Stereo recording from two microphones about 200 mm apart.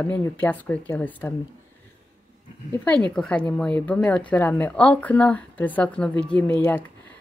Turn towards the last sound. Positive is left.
turn(degrees=5)  # may be behind; listen again after turning